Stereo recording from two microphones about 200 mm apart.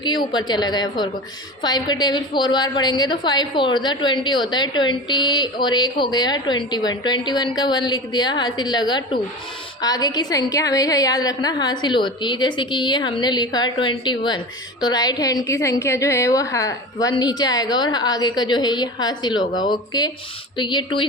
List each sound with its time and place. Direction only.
0.0 s a woman's voice: 20° left (ahead or behind)